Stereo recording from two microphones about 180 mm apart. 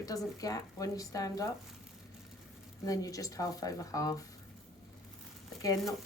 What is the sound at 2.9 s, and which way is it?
Speech, 20° left (ahead or behind).